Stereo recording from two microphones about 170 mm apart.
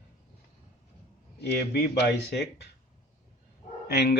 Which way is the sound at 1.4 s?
75° left (ahead or behind).